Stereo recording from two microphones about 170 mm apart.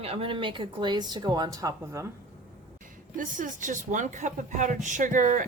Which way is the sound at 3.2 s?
50° right (ahead or behind).